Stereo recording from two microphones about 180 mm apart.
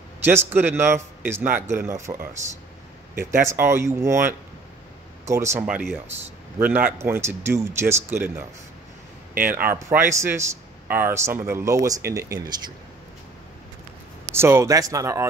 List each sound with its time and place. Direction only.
0.2 s a man's voice: 10° right (ahead or behind)
9.5 s a man's voice: 10° right (ahead or behind)
14.3 s a man's voice: 15° right (ahead or behind)